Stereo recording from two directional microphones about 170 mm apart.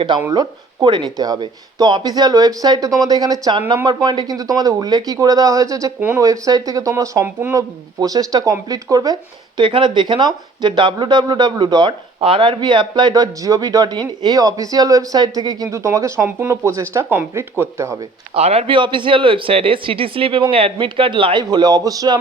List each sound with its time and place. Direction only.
0.2 s speech: 15° right (ahead or behind)
0.8 s speech: 30° right (ahead or behind)
18.3 s speech: 35° right (ahead or behind)